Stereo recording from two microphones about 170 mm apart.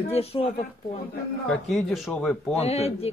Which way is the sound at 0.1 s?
35° left (ahead or behind).